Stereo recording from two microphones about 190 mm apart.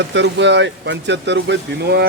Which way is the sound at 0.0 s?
65° right (ahead or behind).